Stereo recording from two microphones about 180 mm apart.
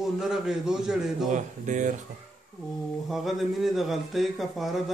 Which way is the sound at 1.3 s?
45° right (ahead or behind).